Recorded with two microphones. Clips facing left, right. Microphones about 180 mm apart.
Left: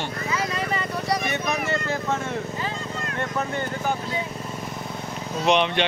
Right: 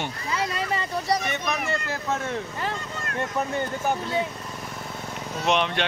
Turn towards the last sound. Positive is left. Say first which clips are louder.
# left 3 dB
turn(degrees=0)  # may be behind; listen again after turning